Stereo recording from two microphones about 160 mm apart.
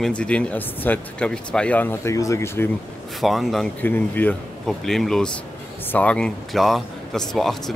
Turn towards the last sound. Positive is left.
turn(degrees=0)  # may be behind; listen again after turning